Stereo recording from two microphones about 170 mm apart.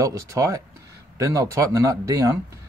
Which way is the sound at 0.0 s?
20° right (ahead or behind).